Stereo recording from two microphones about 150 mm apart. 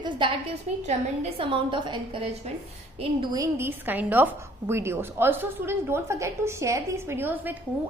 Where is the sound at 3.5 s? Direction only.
15° right (ahead or behind).